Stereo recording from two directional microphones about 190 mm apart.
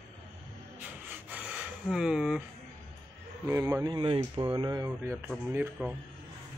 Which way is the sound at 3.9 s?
30° right (ahead or behind).